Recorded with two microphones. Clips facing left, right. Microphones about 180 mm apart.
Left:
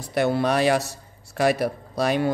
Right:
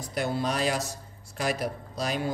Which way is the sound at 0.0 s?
70° left (ahead or behind).